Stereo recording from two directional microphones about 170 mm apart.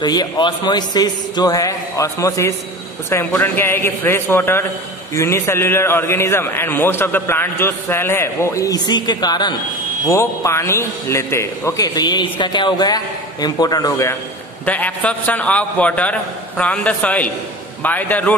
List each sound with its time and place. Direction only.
0.0 s a man's voice: 25° left (ahead or behind)
14.7 s a man's voice: 10° left (ahead or behind)